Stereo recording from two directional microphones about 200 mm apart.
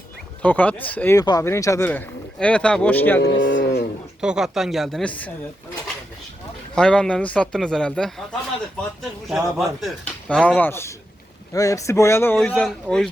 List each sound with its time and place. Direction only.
0.4 s speech: 10° left (ahead or behind)
3.2 s cattle: 65° left (ahead or behind)
4.2 s speech: 5° right (ahead or behind)
6.7 s speech: 5° left (ahead or behind)